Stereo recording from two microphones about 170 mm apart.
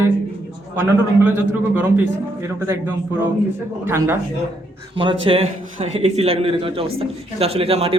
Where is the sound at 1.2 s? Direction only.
10° right (ahead or behind).